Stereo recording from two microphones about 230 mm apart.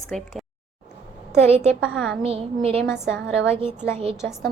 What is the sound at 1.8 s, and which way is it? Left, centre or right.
Speech, centre.